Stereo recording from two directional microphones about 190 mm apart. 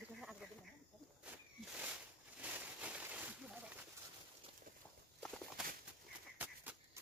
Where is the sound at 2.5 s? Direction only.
10° right (ahead or behind).